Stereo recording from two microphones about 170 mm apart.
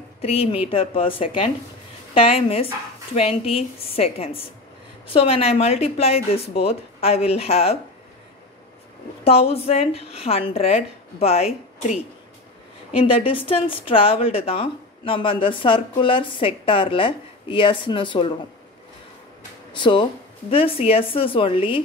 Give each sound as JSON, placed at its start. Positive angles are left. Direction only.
{"t": 0.2, "sound": "a woman's voice", "side_deg": 35}
{"t": 9.2, "sound": "a woman's voice", "side_deg": 35}
{"t": 12.9, "sound": "a woman's voice", "side_deg": 30}
{"t": 19.7, "sound": "a woman's voice", "side_deg": 30}